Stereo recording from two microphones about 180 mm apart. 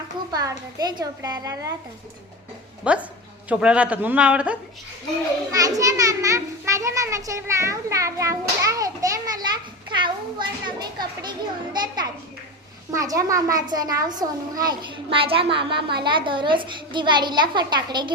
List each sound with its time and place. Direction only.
0.3 s a child's voice: 20° right (ahead or behind)
2.8 s a child's voice: 5° right (ahead or behind)
5.5 s a child's voice: 20° right (ahead or behind)